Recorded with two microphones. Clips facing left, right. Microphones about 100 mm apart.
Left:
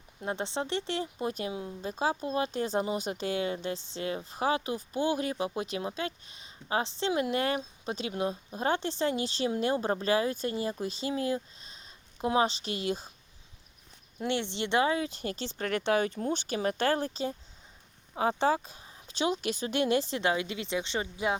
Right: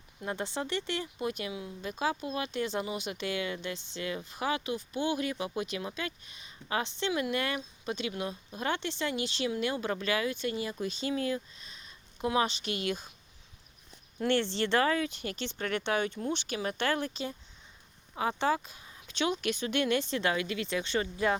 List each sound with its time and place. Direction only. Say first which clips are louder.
0.2 s speech: left 2 dB; 25° left (ahead or behind)
14.2 s speech: right 3 dB; 15° left (ahead or behind)